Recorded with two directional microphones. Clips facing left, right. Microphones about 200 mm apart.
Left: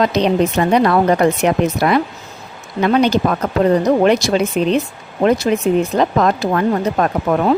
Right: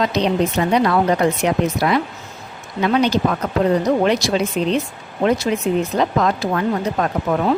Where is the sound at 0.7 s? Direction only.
55° left (ahead or behind).